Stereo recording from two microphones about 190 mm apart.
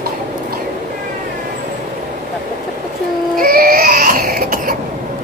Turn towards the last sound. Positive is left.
turn(degrees=-50)  # may be behind; listen again after turning